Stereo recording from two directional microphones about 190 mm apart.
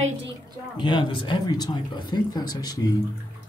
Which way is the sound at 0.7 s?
25° left (ahead or behind).